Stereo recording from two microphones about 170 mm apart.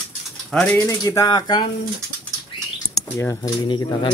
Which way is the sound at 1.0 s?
20° left (ahead or behind).